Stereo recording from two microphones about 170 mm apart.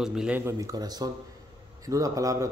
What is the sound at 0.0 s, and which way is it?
Speech, 5° right (ahead or behind).